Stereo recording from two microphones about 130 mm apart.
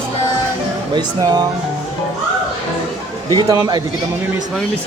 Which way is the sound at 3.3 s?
30° right (ahead or behind).